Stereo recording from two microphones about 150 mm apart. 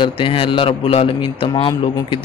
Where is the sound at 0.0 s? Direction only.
35° left (ahead or behind).